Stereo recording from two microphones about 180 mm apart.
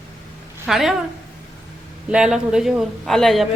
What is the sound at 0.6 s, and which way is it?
Speech, centre (ahead or behind).